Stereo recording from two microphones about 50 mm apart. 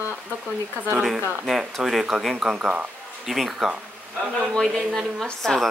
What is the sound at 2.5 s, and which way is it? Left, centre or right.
Speech, right.